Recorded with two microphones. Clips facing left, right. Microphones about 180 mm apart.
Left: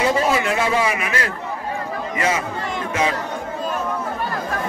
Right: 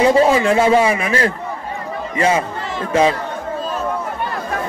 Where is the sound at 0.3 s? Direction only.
30° right (ahead or behind).